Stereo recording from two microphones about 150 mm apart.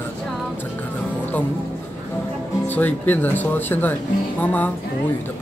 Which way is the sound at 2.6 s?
10° left (ahead or behind).